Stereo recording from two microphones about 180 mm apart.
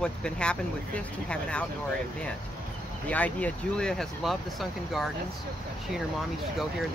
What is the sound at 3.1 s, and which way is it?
Speech, 10° left (ahead or behind).